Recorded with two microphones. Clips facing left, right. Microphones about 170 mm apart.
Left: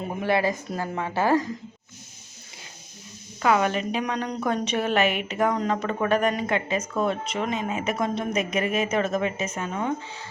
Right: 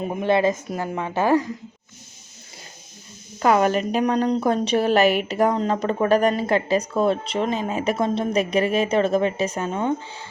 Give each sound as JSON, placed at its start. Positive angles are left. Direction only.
{"t": 0.0, "sound": "a woman's voice", "side_deg": -20}
{"t": 3.4, "sound": "a woman's voice", "side_deg": -40}